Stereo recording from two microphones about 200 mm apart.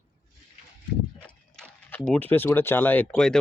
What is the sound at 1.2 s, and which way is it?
Speech, 5° left (ahead or behind).